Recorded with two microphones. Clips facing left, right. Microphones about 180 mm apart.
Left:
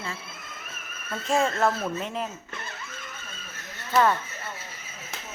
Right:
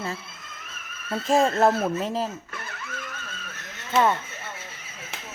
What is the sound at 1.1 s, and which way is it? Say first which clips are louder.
Speech: right 4 dB; 35° right (ahead or behind).